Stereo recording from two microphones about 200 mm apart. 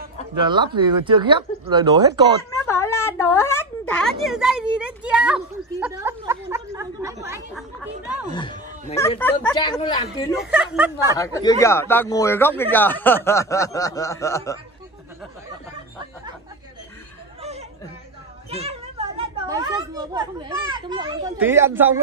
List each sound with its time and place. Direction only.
0.4 s speech: 20° right (ahead or behind)
2.6 s a sound: 15° left (ahead or behind)
3.1 s a woman's voice: 15° left (ahead or behind); by 7.4 s 15° right (ahead or behind)
8.3 s speech: 25° left (ahead or behind)
10.5 s speech: 5° right (ahead or behind)
11.1 s speech: 15° left (ahead or behind)
17.4 s a sound: 30° right (ahead or behind)
18.5 s children playing: 30° right (ahead or behind)
21.4 s speech: 10° right (ahead or behind)